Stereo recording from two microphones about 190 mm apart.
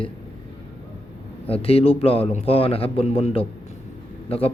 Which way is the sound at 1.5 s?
30° left (ahead or behind).